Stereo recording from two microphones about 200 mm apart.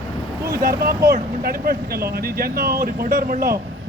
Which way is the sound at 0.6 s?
50° right (ahead or behind).